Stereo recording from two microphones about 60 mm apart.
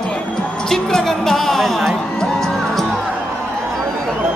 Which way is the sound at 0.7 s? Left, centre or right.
Centre.